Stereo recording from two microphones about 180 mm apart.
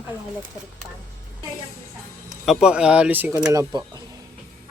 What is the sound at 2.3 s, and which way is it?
Speech, centre (ahead or behind).